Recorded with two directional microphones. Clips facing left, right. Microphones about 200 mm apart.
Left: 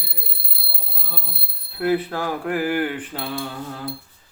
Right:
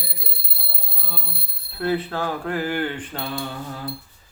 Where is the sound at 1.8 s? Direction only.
10° left (ahead or behind).